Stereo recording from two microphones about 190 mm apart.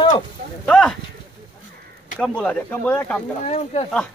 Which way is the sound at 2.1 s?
5° left (ahead or behind).